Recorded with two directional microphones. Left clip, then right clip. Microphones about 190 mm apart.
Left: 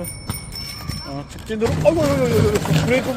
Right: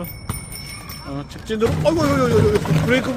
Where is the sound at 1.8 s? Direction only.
20° right (ahead or behind).